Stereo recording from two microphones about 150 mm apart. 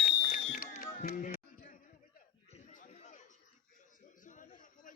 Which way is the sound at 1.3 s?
70° left (ahead or behind).